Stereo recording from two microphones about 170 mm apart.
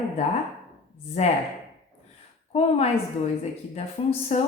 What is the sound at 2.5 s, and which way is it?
Speech, 35° left (ahead or behind).